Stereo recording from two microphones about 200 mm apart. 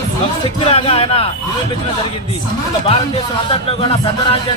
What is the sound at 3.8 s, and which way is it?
Speech, 25° left (ahead or behind).